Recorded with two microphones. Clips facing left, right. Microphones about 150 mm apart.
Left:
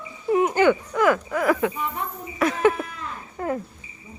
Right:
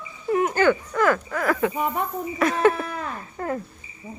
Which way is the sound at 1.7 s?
50° right (ahead or behind).